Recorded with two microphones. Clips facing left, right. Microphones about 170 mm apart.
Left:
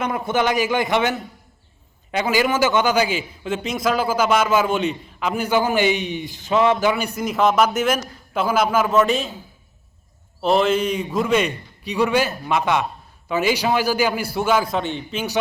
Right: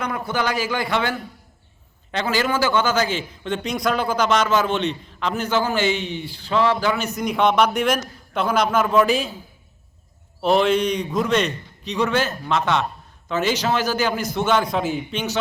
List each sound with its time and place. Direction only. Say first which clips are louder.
0.3 s a man's voice: left 4 dB; 20° left (ahead or behind); by 9.3 s centre (ahead or behind)
10.4 s a man's voice: even; centre (ahead or behind)